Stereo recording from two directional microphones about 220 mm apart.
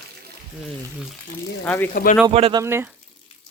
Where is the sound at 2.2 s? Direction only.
20° right (ahead or behind).